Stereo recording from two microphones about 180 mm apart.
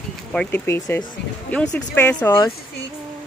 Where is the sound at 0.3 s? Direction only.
10° left (ahead or behind).